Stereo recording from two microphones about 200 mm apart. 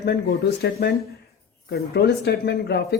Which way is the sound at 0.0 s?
55° left (ahead or behind).